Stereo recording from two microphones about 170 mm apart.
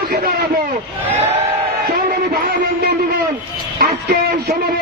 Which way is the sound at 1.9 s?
60° right (ahead or behind).